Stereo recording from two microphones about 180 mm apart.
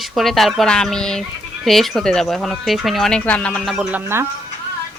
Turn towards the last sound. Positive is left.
turn(degrees=0)  # may be behind; listen again after turning